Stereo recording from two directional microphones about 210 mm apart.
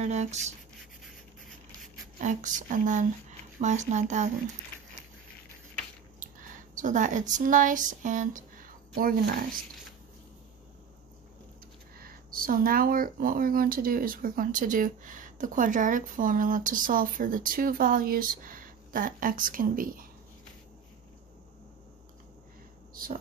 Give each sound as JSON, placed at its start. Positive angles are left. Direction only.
{"t": 0.0, "sound": "speech", "side_deg": -35}
{"t": 2.1, "sound": "speech", "side_deg": -35}
{"t": 6.1, "sound": "speech", "side_deg": -40}
{"t": 12.0, "sound": "speech", "side_deg": -45}